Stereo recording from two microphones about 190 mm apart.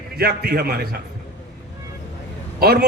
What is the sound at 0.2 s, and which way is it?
Speech, 55° right (ahead or behind).